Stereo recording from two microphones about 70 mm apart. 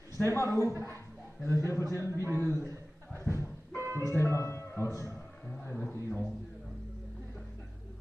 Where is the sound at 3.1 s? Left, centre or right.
Right.